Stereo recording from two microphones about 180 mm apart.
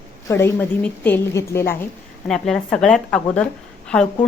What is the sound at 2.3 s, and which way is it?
A woman's voice, centre (ahead or behind).